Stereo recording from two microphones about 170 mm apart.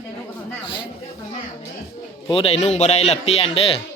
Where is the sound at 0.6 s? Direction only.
30° left (ahead or behind).